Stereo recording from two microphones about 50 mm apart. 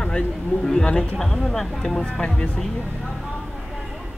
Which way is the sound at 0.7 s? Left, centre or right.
Centre.